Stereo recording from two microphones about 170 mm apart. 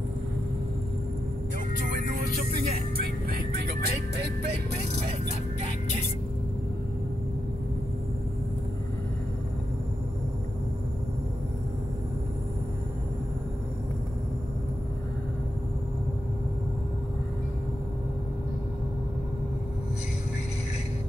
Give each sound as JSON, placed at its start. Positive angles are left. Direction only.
{"t": 3.0, "sound": "speech", "side_deg": -65}